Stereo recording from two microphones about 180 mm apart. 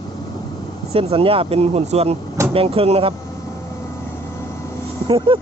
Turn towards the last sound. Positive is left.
turn(degrees=-30)  # may be behind; listen again after turning